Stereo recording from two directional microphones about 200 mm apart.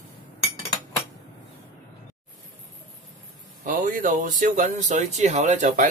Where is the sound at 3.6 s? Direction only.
40° right (ahead or behind).